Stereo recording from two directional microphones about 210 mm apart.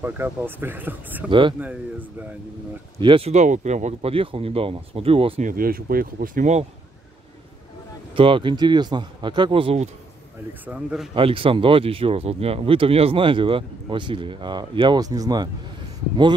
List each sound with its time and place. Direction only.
0.0 s speech: 10° right (ahead or behind)
3.0 s speech: 25° right (ahead or behind)
5.5 s speech: 45° right (ahead or behind)
8.1 s speech: 25° right (ahead or behind)
10.6 s a man's voice: 5° right (ahead or behind)
11.1 s speech: 25° right (ahead or behind)